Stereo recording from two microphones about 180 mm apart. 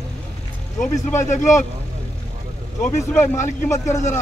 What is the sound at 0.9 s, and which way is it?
Speech, 15° left (ahead or behind).